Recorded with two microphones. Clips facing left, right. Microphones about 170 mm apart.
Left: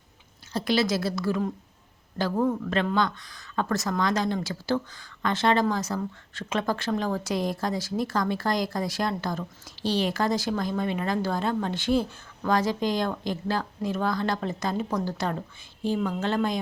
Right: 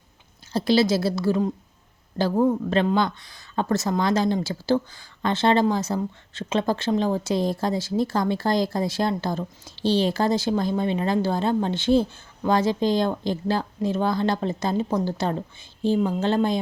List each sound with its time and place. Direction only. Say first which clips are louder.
0.5 s speech: right 5 dB; 30° right (ahead or behind)